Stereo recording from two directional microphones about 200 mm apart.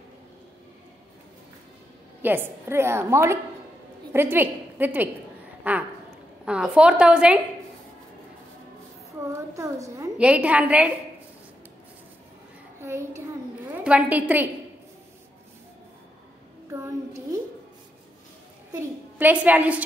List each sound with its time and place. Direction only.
2.2 s a woman's voice: 10° right (ahead or behind)
5.6 s a sound: 5° right (ahead or behind)
6.4 s a woman's voice: 5° right (ahead or behind)
9.2 s a woman's voice: 15° right (ahead or behind)
13.7 s a woman's voice: 5° right (ahead or behind)
18.7 s a woman's voice: 10° right (ahead or behind)